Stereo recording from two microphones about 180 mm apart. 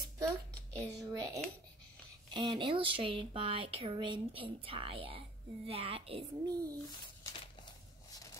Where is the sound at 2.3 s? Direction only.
25° right (ahead or behind).